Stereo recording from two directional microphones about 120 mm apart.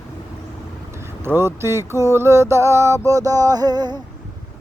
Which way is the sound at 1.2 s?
20° right (ahead or behind).